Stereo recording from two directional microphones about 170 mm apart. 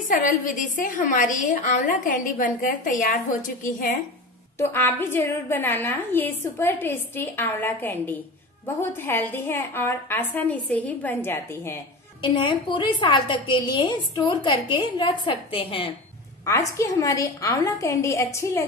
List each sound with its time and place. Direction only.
0.1 s a woman's voice: 50° left (ahead or behind)
4.6 s a woman's voice: 10° left (ahead or behind)
12.2 s a woman's voice: 30° left (ahead or behind)
16.4 s a woman's voice: 20° left (ahead or behind)